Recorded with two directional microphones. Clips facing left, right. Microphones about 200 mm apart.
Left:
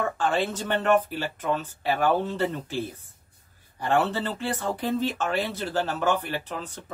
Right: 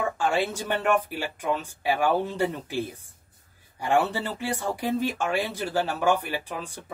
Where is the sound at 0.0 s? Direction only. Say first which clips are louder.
Even; 10° right (ahead or behind).